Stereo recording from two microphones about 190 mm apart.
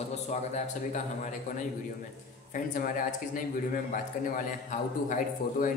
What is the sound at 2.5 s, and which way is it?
Speech, 45° left (ahead or behind).